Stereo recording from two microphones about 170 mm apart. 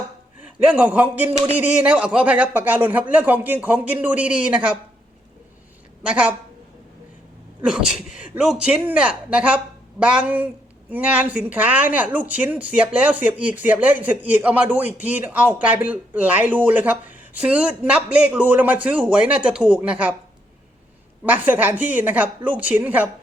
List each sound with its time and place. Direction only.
0.4 s speech: 5° right (ahead or behind)
6.1 s speech: 5° right (ahead or behind)
7.6 s speech: 5° right (ahead or behind)
21.2 s speech: 10° right (ahead or behind)